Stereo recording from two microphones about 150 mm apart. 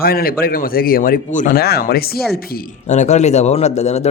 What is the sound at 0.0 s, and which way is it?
Speech, 80° left.